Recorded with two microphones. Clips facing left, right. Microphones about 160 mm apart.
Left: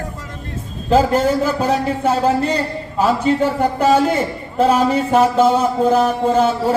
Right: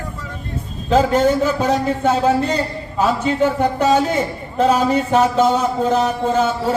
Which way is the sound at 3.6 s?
10° left (ahead or behind).